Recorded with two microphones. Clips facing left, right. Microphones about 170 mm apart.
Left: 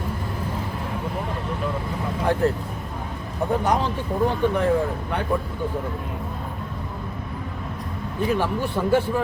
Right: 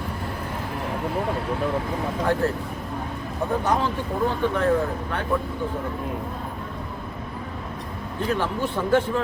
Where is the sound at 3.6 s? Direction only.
15° left (ahead or behind).